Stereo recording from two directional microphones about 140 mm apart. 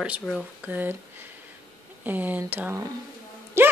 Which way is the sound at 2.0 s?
10° right (ahead or behind).